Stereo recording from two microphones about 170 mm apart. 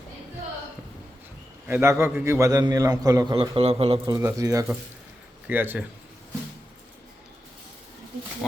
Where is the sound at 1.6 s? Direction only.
15° right (ahead or behind).